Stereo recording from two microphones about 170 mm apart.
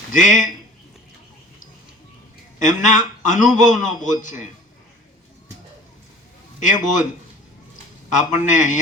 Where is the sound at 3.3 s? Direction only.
45° left (ahead or behind).